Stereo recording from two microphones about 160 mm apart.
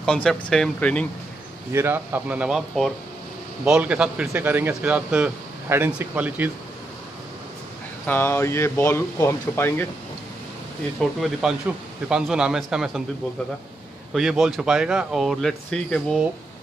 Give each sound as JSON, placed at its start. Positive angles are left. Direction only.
{"t": 0.0, "sound": "speech", "side_deg": 5}
{"t": 1.7, "sound": "a man's voice", "side_deg": -15}
{"t": 8.1, "sound": "speech", "side_deg": 15}
{"t": 11.0, "sound": "speech", "side_deg": 0}
{"t": 14.1, "sound": "speech", "side_deg": 0}